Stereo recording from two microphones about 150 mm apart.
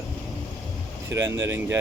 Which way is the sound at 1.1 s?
20° right (ahead or behind).